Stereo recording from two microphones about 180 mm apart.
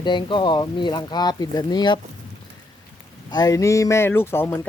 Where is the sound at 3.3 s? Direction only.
20° left (ahead or behind).